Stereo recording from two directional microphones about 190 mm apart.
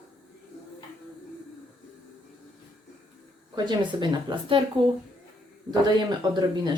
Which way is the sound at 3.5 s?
25° right (ahead or behind).